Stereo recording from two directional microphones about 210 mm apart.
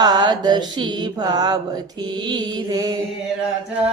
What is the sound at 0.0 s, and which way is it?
Mantra, 20° right (ahead or behind).